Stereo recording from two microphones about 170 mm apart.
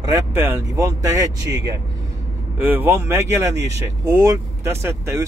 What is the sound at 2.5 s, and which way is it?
Speech, 10° right (ahead or behind).